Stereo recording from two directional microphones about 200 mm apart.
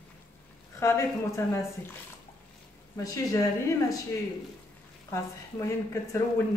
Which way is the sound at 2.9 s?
15° left (ahead or behind).